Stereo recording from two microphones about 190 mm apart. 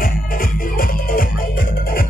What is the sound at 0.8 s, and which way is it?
Music, 50° left (ahead or behind).